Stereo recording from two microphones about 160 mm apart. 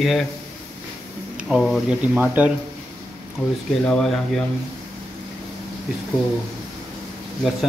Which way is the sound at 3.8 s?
5° left (ahead or behind).